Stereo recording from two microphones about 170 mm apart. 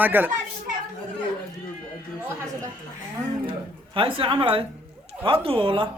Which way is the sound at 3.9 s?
30° right (ahead or behind).